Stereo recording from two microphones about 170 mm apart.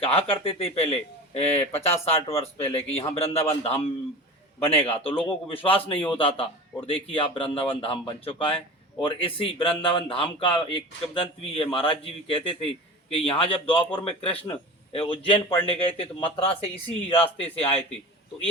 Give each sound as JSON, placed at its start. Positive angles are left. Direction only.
{"t": 0.0, "sound": "speech", "side_deg": 35}